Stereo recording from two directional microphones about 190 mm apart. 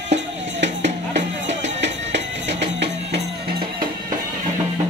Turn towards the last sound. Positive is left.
turn(degrees=-55)  # may be behind; listen again after turning